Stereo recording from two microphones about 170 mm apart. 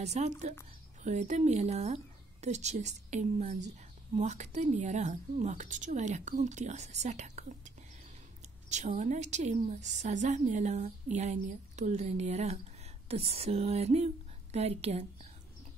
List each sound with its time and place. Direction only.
0.0 s a woman's voice: 40° right (ahead or behind)